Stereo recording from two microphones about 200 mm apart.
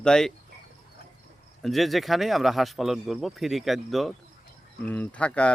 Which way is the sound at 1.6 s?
Centre (ahead or behind).